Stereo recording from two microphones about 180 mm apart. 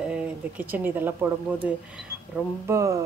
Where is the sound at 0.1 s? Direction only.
10° right (ahead or behind).